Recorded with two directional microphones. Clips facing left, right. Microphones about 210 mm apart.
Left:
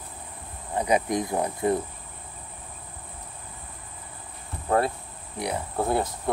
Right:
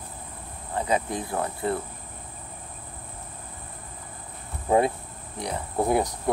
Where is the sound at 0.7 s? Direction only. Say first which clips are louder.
Left 3 dB; 15° left (ahead or behind).